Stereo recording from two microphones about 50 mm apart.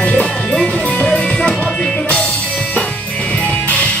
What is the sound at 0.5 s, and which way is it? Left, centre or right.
Music, centre.